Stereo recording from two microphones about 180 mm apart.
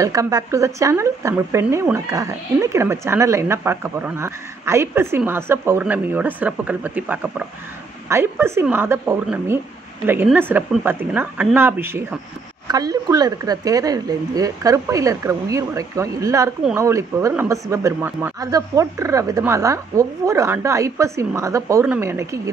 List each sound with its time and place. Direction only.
0.0 s speech: 20° right (ahead or behind)